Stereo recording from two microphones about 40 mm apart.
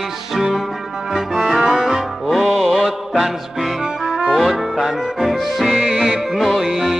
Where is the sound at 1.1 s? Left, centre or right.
Centre.